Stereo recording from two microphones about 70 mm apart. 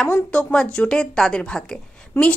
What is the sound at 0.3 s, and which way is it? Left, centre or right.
A woman's voice, centre.